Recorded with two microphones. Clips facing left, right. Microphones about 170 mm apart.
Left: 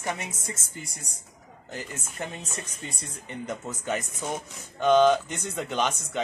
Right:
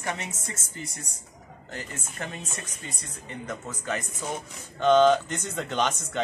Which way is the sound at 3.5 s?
20° left (ahead or behind).